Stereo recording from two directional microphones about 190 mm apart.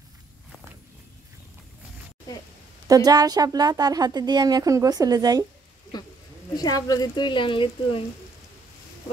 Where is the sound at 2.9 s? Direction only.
20° right (ahead or behind).